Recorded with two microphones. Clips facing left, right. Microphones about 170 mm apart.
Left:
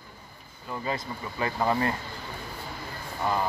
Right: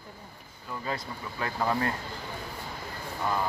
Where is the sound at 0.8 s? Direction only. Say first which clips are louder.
Left 2 dB; 5° left (ahead or behind).